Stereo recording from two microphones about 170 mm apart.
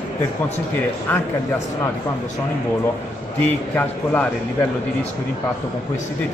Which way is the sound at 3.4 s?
10° left (ahead or behind).